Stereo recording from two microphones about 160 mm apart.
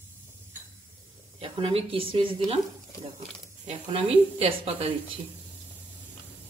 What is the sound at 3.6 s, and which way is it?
Speech, 40° right (ahead or behind).